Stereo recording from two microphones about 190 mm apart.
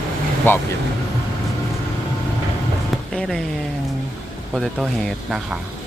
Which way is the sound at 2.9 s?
Centre (ahead or behind).